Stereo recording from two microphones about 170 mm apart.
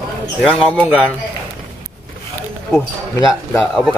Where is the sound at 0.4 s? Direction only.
5° left (ahead or behind).